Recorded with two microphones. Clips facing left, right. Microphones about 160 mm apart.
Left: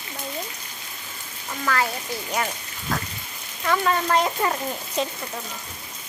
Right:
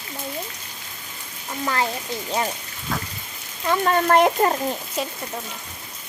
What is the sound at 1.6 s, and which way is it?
Speech, 25° right (ahead or behind).